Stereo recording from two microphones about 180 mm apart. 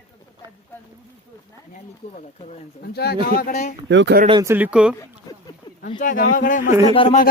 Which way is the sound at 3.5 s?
40° left (ahead or behind).